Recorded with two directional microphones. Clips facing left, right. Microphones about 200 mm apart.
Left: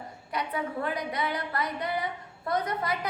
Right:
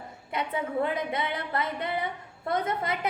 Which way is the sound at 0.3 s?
25° right (ahead or behind).